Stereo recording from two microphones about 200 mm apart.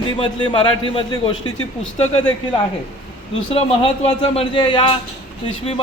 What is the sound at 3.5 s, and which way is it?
A man's voice, 30° left (ahead or behind).